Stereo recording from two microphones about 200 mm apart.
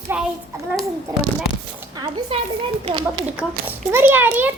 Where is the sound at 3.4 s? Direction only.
10° right (ahead or behind).